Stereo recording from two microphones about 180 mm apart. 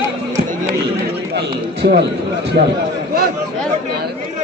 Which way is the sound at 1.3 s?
65° right (ahead or behind).